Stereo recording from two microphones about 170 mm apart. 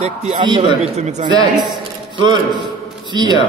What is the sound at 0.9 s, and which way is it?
Speech, 40° right (ahead or behind).